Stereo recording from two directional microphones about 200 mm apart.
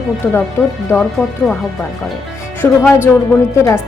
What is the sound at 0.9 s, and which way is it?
Speech, 10° left (ahead or behind).